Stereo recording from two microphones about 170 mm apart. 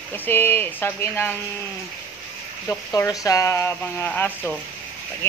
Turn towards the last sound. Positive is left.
turn(degrees=10)  # may be behind; listen again after turning